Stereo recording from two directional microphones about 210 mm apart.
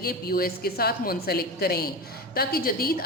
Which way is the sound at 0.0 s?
45° left (ahead or behind).